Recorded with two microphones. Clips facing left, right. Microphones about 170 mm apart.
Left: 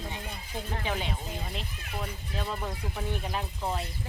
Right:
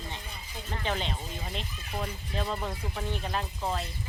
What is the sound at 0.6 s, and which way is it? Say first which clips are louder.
Speech: right 1 dB; 5° left (ahead or behind).